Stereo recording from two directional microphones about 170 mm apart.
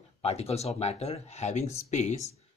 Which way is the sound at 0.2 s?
35° left (ahead or behind).